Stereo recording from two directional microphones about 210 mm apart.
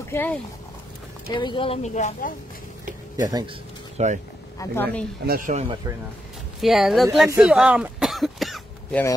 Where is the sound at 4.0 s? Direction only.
30° right (ahead or behind).